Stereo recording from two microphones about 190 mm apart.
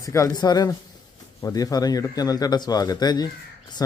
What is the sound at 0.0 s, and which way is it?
Speech, 15° left (ahead or behind).